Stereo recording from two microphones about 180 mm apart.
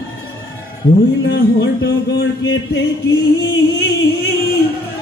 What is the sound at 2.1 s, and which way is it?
Speech, 80° left.